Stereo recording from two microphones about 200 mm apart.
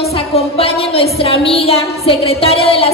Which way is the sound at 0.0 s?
30° left (ahead or behind).